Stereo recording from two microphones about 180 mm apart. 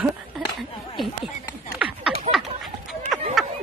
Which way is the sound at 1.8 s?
5° right (ahead or behind).